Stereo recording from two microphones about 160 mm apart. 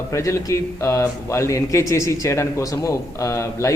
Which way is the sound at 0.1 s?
20° left (ahead or behind).